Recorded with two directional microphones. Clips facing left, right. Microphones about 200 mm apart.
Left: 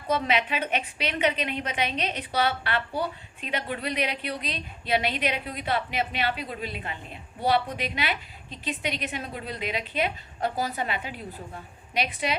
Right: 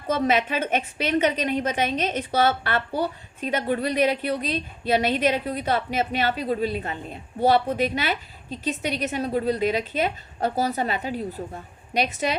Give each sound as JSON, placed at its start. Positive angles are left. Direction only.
{"t": 0.1, "sound": "a woman's voice", "side_deg": -45}